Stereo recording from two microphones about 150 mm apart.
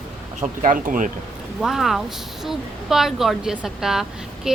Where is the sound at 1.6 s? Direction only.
Centre (ahead or behind).